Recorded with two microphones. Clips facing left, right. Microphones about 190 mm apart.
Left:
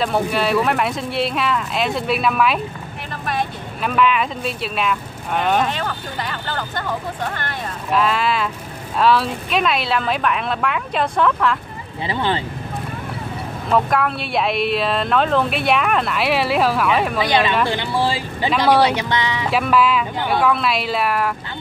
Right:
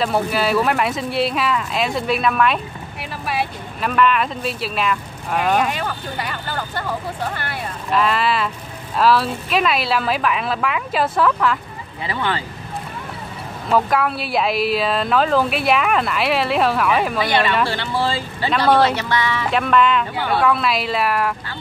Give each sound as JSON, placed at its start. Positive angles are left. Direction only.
{"t": 0.0, "sound": "speech", "side_deg": 0}
{"t": 12.1, "sound": "speech", "side_deg": 25}
{"t": 13.7, "sound": "speech", "side_deg": 0}
{"t": 17.2, "sound": "speech", "side_deg": 20}
{"t": 19.5, "sound": "speech", "side_deg": 5}